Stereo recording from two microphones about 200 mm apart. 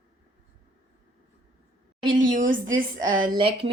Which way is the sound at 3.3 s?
25° right (ahead or behind).